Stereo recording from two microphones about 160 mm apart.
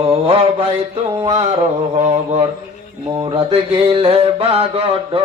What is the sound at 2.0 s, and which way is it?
Mantra, 40° right (ahead or behind).